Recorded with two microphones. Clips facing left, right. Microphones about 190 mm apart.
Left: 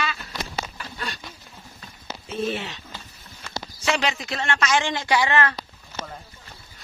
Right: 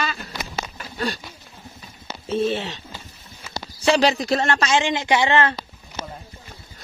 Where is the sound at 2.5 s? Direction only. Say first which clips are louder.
Right 3 dB; 30° right (ahead or behind).